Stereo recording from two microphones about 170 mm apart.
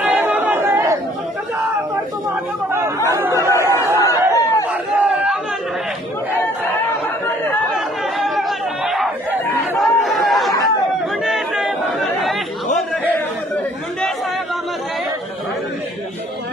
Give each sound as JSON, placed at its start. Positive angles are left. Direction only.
{"t": 0.0, "sound": "chatter", "side_deg": -10}
{"t": 3.2, "sound": "chatter", "side_deg": -15}
{"t": 3.6, "sound": "a sound", "side_deg": -15}
{"t": 4.0, "sound": "chatter", "side_deg": 20}
{"t": 4.9, "sound": "chatter", "side_deg": -5}
{"t": 8.2, "sound": "chatter", "side_deg": 0}
{"t": 9.8, "sound": "a sound", "side_deg": 0}
{"t": 11.2, "sound": "chatter", "side_deg": 0}